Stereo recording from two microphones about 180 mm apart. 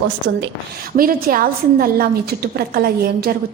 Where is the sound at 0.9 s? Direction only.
55° right (ahead or behind).